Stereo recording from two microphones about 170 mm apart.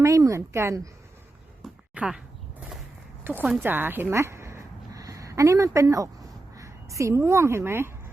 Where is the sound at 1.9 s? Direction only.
5° right (ahead or behind).